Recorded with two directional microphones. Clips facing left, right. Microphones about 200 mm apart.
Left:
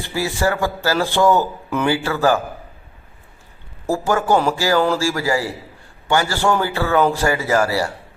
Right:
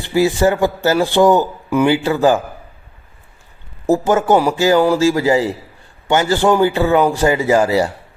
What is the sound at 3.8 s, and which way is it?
Speech, 20° right (ahead or behind).